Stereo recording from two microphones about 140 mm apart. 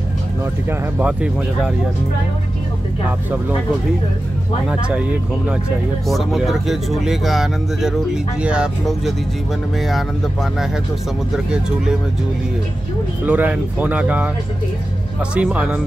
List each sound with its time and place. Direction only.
0.7 s speech: 10° right (ahead or behind)
4.6 s speech: 5° right (ahead or behind)
6.0 s speech: centre (ahead or behind)
13.2 s speech: 10° right (ahead or behind)
15.3 s speech: 5° right (ahead or behind)